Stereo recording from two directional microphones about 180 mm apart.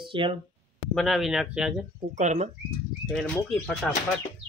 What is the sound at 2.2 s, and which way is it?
Speech, 40° right (ahead or behind).